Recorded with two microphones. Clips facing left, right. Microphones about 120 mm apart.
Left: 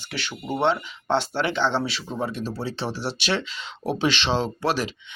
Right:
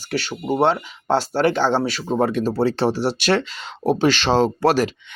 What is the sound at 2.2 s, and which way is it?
Speech, 55° right (ahead or behind).